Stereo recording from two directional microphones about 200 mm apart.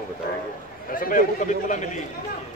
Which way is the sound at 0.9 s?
45° left (ahead or behind).